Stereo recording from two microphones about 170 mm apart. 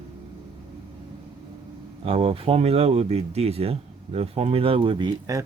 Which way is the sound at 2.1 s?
35° right (ahead or behind).